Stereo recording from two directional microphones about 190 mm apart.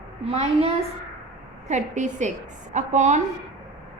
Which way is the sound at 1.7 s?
40° right (ahead or behind).